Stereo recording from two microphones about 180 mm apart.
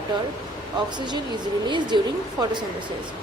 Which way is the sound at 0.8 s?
25° right (ahead or behind).